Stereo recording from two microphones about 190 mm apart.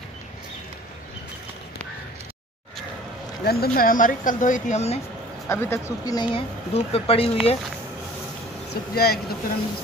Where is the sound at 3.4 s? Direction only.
55° left (ahead or behind); by 5.0 s 35° left (ahead or behind).